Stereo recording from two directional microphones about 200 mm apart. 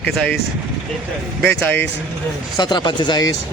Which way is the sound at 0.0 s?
5° left (ahead or behind).